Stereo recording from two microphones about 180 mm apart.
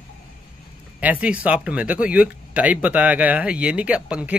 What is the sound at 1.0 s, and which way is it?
Speech, 10° right (ahead or behind).